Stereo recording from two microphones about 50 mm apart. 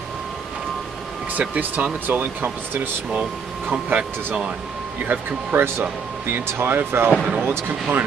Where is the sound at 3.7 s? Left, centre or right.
Right.